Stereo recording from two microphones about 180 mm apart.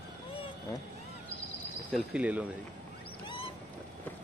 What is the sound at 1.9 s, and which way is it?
Speech, 5° right (ahead or behind).